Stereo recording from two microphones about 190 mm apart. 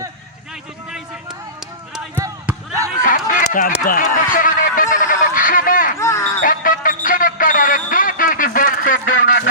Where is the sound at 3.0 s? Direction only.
45° left (ahead or behind).